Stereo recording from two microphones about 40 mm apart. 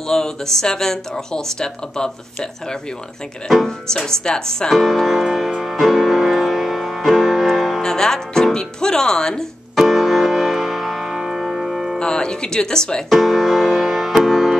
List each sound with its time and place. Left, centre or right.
0.1 s speech: centre
3.6 s speech: centre
5.5 s music: centre
7.8 s speech: centre
9.8 s music: centre
12.0 s speech: left
13.1 s music: centre